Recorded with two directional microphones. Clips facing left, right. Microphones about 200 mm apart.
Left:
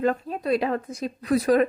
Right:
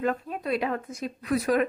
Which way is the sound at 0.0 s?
35° left (ahead or behind).